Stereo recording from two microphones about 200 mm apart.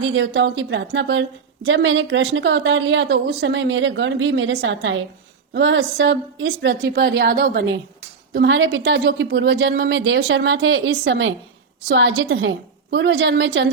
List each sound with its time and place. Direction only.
0.0 s a woman's voice: 65° right (ahead or behind)